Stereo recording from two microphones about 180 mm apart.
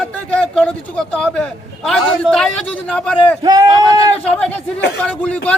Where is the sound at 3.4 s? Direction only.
20° right (ahead or behind).